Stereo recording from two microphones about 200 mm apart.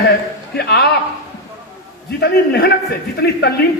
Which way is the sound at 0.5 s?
55° left (ahead or behind).